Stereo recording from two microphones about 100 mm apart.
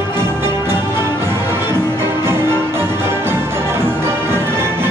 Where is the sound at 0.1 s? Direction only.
25° right (ahead or behind).